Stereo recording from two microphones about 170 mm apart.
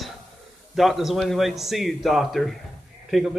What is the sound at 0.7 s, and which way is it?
A man's voice, centre (ahead or behind).